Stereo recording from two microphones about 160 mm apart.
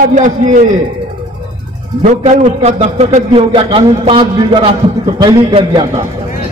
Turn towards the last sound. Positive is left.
turn(degrees=-35)  # may be behind; listen again after turning